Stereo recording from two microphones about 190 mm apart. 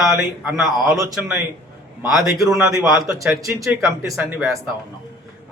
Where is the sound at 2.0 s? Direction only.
Centre (ahead or behind).